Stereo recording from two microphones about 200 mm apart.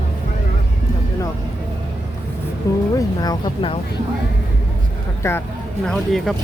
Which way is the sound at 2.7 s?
15° left (ahead or behind).